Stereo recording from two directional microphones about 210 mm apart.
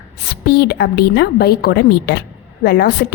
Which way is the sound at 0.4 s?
50° left (ahead or behind).